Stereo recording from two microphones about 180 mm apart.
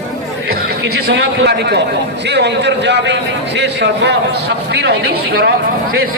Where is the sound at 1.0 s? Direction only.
80° right.